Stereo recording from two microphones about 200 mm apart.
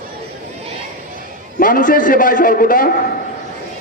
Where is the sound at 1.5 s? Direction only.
45° left (ahead or behind).